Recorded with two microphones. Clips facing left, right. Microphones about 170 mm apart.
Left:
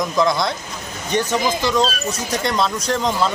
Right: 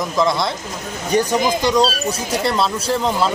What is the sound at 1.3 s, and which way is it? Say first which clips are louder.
Speech: right 2 dB; 15° right (ahead or behind).